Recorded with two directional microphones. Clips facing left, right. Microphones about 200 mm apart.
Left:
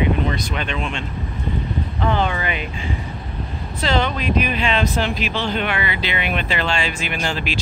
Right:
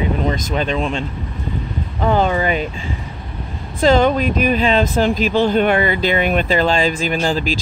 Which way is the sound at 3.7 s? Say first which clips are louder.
Right 8 dB; 45° right (ahead or behind).